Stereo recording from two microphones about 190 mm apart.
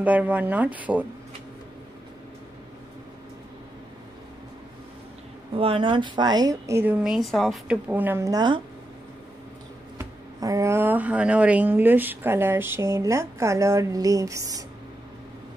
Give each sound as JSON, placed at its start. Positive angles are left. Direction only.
{"t": 0.0, "sound": "speech", "side_deg": -10}
{"t": 5.5, "sound": "speech", "side_deg": -30}
{"t": 9.9, "sound": "speech", "side_deg": -15}